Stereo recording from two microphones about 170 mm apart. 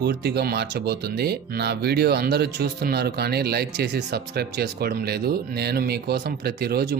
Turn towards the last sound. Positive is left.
turn(degrees=-65)  # may be behind; listen again after turning